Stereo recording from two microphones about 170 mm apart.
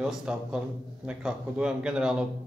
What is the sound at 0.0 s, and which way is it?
A man's voice, 5° right (ahead or behind).